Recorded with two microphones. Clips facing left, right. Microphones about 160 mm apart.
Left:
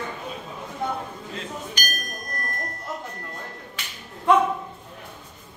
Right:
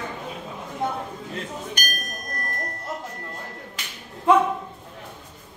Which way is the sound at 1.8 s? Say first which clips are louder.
Even; 55° right (ahead or behind).